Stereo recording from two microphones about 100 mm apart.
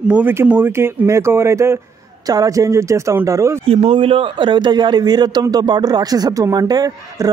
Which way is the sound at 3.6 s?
70° right (ahead or behind).